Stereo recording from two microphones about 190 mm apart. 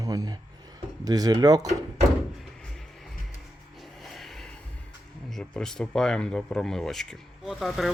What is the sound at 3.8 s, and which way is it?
Vehicle, centre (ahead or behind).